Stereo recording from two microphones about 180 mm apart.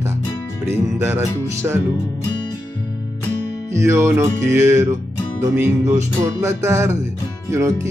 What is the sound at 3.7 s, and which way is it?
Music, 15° right (ahead or behind).